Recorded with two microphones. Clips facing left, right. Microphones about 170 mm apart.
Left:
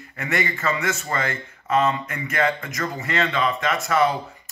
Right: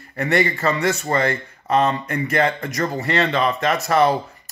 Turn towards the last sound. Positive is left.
turn(degrees=-40)  # may be behind; listen again after turning